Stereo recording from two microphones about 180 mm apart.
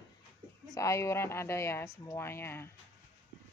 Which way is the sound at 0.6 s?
15° left (ahead or behind).